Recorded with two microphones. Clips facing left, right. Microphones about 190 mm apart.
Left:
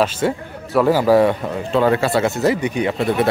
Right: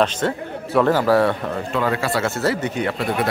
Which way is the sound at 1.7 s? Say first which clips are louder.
Left 7 dB; 30° left (ahead or behind).